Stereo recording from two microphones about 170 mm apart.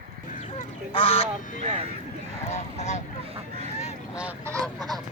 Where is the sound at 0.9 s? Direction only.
35° left (ahead or behind).